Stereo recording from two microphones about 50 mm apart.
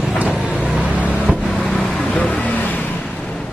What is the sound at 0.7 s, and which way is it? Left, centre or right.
Vehicle, centre.